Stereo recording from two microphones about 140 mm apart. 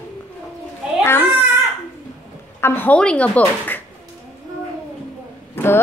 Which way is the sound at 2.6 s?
15° left (ahead or behind).